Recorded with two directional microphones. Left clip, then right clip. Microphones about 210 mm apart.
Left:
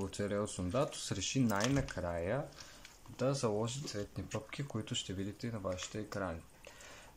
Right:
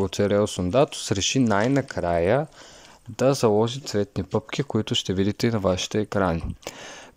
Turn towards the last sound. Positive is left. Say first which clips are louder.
# right 16 dB
turn(degrees=-45)  # may be behind; listen again after turning